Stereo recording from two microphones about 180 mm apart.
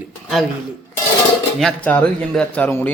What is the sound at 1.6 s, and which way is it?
A man's voice, 5° left (ahead or behind).